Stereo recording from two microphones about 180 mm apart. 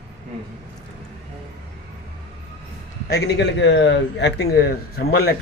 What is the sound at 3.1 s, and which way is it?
A man's voice, 80° left.